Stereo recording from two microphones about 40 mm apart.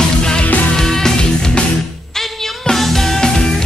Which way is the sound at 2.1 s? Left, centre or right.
Centre.